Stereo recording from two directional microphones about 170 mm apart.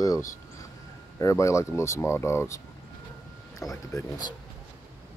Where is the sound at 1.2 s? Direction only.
15° left (ahead or behind).